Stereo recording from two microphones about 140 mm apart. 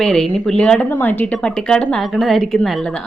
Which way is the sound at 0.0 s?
5° left (ahead or behind).